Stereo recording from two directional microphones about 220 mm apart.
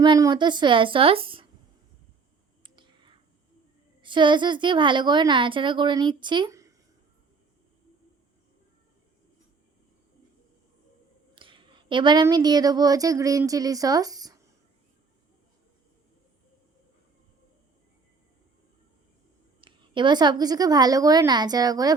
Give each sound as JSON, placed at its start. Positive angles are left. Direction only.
{"t": 0.0, "sound": "a woman's voice", "side_deg": -20}
{"t": 2.6, "sound": "clicking", "side_deg": -20}
{"t": 4.0, "sound": "a woman's voice", "side_deg": -20}
{"t": 11.3, "sound": "a woman's voice", "side_deg": -20}
{"t": 19.6, "sound": "a woman's voice", "side_deg": -20}